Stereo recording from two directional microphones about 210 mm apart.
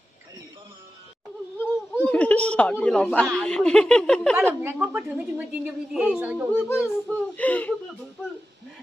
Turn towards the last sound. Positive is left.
turn(degrees=5)  # may be behind; listen again after turning